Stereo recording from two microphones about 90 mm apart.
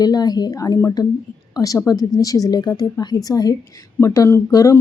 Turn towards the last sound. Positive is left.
turn(degrees=40)  # may be behind; listen again after turning